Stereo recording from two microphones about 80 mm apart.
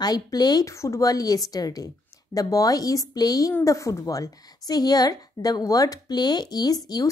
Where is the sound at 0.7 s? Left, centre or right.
Left.